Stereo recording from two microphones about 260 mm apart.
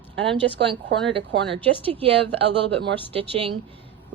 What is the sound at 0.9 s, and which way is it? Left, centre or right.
Speech, right.